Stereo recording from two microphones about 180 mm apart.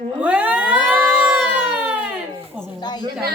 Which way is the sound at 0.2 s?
5° right (ahead or behind).